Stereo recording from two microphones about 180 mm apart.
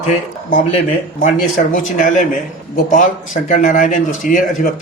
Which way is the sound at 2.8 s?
45° left (ahead or behind).